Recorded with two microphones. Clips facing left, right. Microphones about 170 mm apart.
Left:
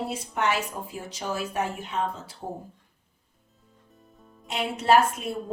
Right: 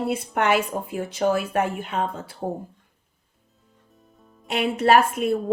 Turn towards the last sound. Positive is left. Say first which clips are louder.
# right 3 dB
turn(degrees=-60)  # may be behind; listen again after turning